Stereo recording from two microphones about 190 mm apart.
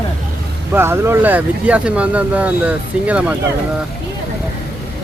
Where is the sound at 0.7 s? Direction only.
10° right (ahead or behind).